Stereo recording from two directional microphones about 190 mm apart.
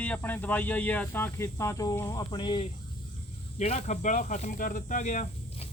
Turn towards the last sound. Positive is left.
turn(degrees=35)  # may be behind; listen again after turning